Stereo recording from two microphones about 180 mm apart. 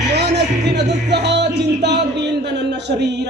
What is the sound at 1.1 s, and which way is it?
Music, 70° right (ahead or behind).